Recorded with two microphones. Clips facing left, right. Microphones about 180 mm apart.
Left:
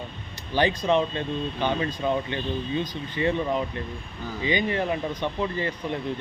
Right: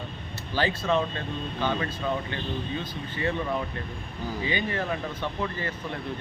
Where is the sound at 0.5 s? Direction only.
15° left (ahead or behind).